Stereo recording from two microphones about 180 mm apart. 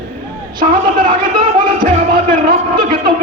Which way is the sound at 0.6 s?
50° right (ahead or behind).